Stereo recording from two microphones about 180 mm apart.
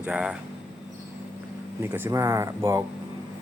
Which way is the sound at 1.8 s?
15° right (ahead or behind).